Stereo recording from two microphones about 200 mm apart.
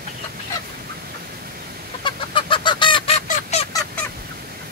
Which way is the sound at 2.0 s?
25° left (ahead or behind).